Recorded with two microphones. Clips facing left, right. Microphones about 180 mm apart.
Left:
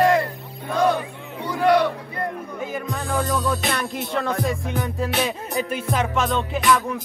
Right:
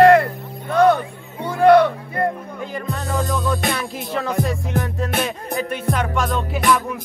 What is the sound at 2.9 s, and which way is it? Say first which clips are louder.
Music: right 1 dB; centre (ahead or behind).